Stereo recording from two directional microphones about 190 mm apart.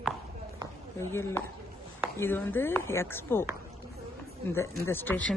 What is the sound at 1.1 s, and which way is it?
A man's voice, 10° left (ahead or behind).